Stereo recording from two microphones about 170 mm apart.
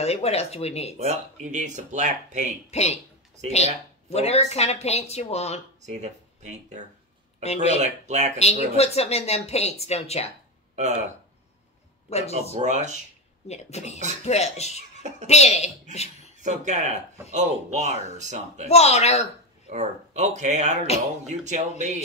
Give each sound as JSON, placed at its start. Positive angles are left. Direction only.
{"t": 0.0, "sound": "speech", "side_deg": 40}
{"t": 0.9, "sound": "speech", "side_deg": -45}
{"t": 2.7, "sound": "speech", "side_deg": 40}
{"t": 5.8, "sound": "speech", "side_deg": -45}
{"t": 7.4, "sound": "speech", "side_deg": 40}
{"t": 7.8, "sound": "speech", "side_deg": -45}
{"t": 8.4, "sound": "speech", "side_deg": 40}
{"t": 12.1, "sound": "speech", "side_deg": 40}
{"t": 12.5, "sound": "speech", "side_deg": -45}
{"t": 13.5, "sound": "speech", "side_deg": 40}
{"t": 16.4, "sound": "speech", "side_deg": -45}
{"t": 18.7, "sound": "speech", "side_deg": 40}
{"t": 19.7, "sound": "speech", "side_deg": -45}